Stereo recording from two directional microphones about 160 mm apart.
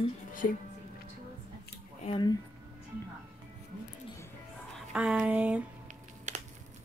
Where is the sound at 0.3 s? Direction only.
55° left (ahead or behind).